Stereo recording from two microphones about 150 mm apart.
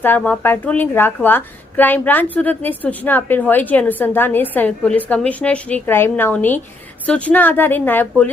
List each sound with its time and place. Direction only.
0.0 s speech: 15° left (ahead or behind)